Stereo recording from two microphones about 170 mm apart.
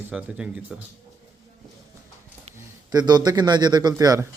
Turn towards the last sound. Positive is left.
turn(degrees=-20)  # may be behind; listen again after turning